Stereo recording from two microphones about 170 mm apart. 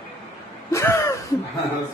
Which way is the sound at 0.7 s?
15° left (ahead or behind).